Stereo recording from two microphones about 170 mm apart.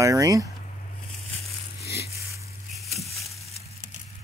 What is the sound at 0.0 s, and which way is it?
Speech, 20° right (ahead or behind).